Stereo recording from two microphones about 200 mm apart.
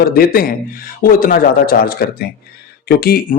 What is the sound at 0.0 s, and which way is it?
Speech, 50° left (ahead or behind).